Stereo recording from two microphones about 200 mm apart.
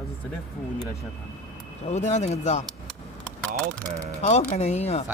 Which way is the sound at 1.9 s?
35° left (ahead or behind).